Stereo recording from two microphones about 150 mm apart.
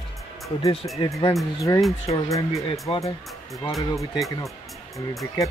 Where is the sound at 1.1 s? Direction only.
20° left (ahead or behind).